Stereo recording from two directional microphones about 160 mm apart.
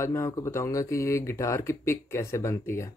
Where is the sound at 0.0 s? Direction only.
20° left (ahead or behind).